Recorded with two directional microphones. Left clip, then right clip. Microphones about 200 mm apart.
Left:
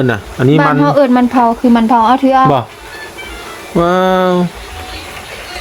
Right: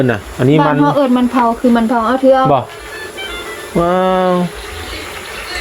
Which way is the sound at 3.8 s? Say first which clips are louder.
Left 2 dB; 25° left (ahead or behind).